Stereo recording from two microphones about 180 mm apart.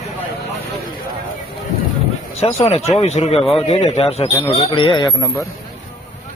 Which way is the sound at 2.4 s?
35° left (ahead or behind).